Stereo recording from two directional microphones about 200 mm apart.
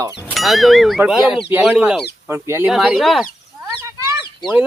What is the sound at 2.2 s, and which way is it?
Speech, 10° right (ahead or behind).